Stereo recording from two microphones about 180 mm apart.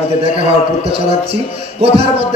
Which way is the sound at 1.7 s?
35° right (ahead or behind).